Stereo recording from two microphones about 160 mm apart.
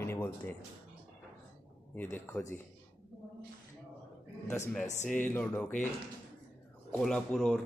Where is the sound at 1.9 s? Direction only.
15° left (ahead or behind).